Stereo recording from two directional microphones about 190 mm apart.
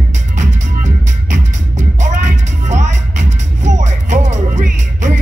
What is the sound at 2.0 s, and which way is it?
Music, 40° right (ahead or behind).